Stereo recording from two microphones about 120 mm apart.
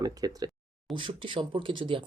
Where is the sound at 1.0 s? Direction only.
45° right (ahead or behind).